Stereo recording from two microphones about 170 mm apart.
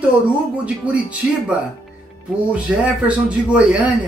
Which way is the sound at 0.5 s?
5° right (ahead or behind).